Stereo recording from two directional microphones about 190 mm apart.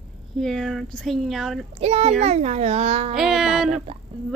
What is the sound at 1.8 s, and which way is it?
A child's voice, 35° right (ahead or behind).